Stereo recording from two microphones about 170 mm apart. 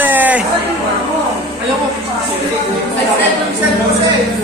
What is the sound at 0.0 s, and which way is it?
Chatter, 10° right (ahead or behind).